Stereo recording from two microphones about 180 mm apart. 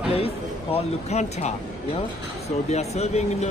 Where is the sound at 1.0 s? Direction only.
40° left (ahead or behind).